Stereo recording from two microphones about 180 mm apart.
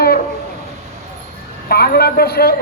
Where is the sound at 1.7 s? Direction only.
60° left (ahead or behind).